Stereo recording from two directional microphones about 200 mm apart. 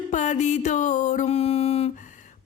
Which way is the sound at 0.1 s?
35° left (ahead or behind).